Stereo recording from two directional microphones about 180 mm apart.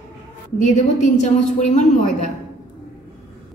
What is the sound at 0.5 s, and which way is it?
A woman's voice, 40° left (ahead or behind).